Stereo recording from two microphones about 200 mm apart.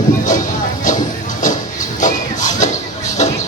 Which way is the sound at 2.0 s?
40° left (ahead or behind).